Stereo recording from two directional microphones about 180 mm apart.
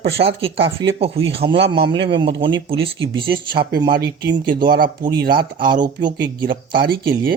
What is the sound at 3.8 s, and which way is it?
Speech, 70° right (ahead or behind).